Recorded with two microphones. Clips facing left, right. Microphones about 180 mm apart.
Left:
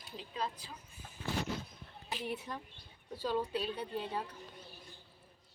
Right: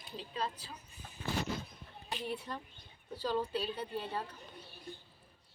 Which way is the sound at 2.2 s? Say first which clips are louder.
Even; 15° left (ahead or behind).